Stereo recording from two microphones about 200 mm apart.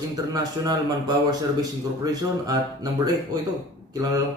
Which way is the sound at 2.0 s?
20° right (ahead or behind).